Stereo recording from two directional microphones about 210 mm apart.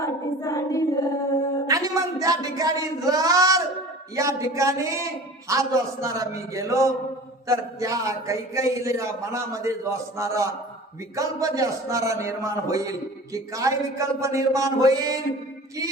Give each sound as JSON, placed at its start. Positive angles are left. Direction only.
{"t": 0.0, "sound": "child singing", "side_deg": 15}
{"t": 1.6, "sound": "a sound", "side_deg": -15}
{"t": 4.1, "sound": "a man's voice", "side_deg": -15}